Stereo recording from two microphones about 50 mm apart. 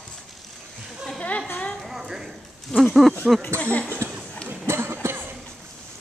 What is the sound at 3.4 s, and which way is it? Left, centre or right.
Speech, right.